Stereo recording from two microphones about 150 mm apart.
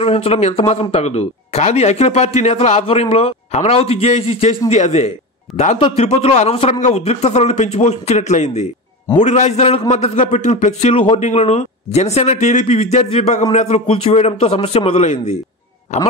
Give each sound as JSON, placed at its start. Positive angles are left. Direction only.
{"t": 0.0, "sound": "a man's voice", "side_deg": 40}
{"t": 5.5, "sound": "speech", "side_deg": 0}
{"t": 5.9, "sound": "a man's voice", "side_deg": 50}